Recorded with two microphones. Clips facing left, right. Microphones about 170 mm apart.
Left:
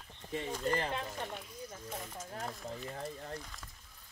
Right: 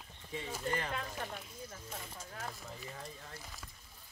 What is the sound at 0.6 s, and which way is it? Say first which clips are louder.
Speech: left 3 dB; 30° left (ahead or behind).